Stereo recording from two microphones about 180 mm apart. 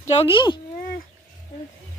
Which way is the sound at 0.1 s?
30° left (ahead or behind).